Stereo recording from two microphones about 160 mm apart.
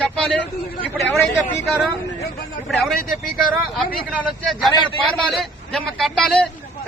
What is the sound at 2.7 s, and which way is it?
Speech, centre (ahead or behind).